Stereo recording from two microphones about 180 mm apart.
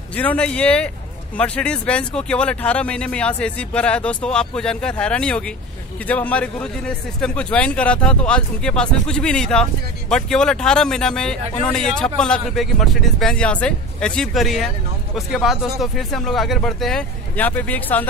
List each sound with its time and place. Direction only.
0.1 s speech: 10° left (ahead or behind)